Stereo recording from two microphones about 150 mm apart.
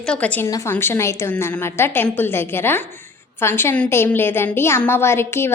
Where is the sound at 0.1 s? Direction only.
10° left (ahead or behind).